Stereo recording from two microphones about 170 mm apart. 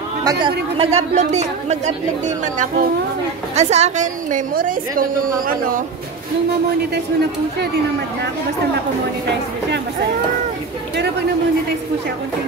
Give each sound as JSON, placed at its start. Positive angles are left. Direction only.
{"t": 0.2, "sound": "speech", "side_deg": -20}
{"t": 0.7, "sound": "a woman's voice", "side_deg": -40}
{"t": 3.5, "sound": "a woman's voice", "side_deg": -40}